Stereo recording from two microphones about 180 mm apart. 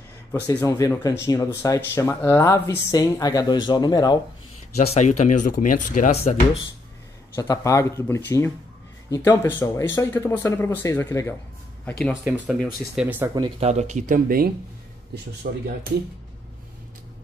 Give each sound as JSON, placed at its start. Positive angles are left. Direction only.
{"t": 0.3, "sound": "speech", "side_deg": 15}
{"t": 4.7, "sound": "speech", "side_deg": 40}
{"t": 7.3, "sound": "speech", "side_deg": 20}
{"t": 12.1, "sound": "speech", "side_deg": -5}
{"t": 13.6, "sound": "speech", "side_deg": -40}
{"t": 15.4, "sound": "speech", "side_deg": -60}